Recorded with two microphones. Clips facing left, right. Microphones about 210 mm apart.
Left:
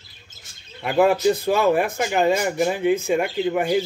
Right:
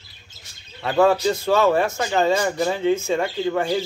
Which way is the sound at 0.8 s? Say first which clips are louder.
Even; 15° left (ahead or behind).